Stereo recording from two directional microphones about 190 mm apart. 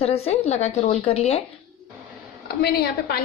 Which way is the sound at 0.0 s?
35° left (ahead or behind).